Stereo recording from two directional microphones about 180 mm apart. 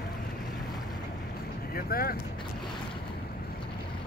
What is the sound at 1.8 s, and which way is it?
Speech, 55° left (ahead or behind).